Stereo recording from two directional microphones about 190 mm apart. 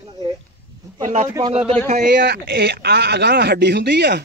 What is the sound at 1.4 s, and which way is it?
Speech, 30° right (ahead or behind).